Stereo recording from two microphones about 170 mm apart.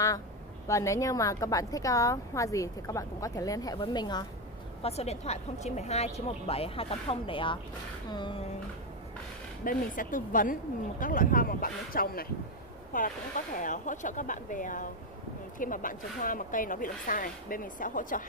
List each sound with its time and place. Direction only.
0.7 s a woman's voice: 20° left (ahead or behind)
4.8 s a woman's voice: 40° left (ahead or behind)
9.7 s speech: 50° left (ahead or behind)